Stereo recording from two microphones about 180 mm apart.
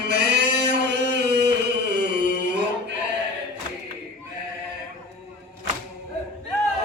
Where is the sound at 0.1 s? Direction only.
70° right (ahead or behind).